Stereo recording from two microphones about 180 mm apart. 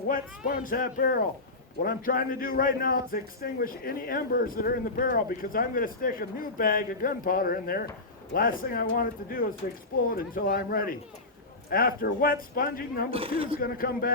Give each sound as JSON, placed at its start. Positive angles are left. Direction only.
{"t": 0.1, "sound": "a man's voice", "side_deg": 50}
{"t": 13.1, "sound": "speech", "side_deg": -30}
{"t": 13.6, "sound": "speech", "side_deg": 55}